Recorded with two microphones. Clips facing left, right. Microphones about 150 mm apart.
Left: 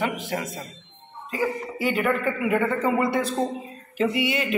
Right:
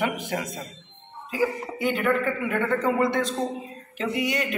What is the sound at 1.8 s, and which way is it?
Speech, 5° left (ahead or behind).